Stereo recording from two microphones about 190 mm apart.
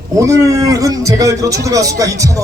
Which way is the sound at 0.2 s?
15° right (ahead or behind).